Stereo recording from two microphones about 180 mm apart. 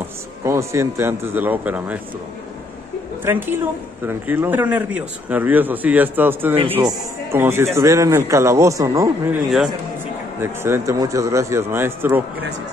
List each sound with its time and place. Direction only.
0.4 s a man's voice: 15° right (ahead or behind)
3.3 s a man's voice: 10° right (ahead or behind)
10.4 s a man's voice: 15° right (ahead or behind)